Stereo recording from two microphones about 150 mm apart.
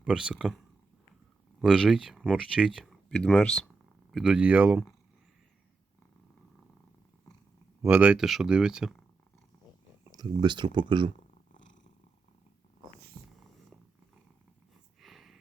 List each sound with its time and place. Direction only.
0.0 s speech: 5° right (ahead or behind)
1.6 s speech: centre (ahead or behind)
4.1 s speech: 5° right (ahead or behind)
7.8 s speech: 10° right (ahead or behind)
10.1 s speech: 30° right (ahead or behind)
11.5 s purr: 55° left (ahead or behind)
13.2 s purr: 5° left (ahead or behind)
15.0 s a sound: centre (ahead or behind)